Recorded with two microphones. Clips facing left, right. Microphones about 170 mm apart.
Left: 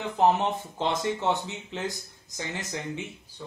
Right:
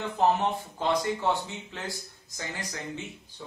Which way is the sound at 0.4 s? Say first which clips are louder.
Left 1 dB; 20° left (ahead or behind).